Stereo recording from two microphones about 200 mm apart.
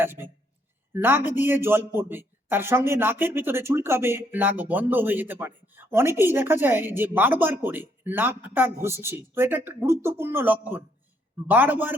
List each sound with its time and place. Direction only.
0.0 s a man's voice: 10° right (ahead or behind)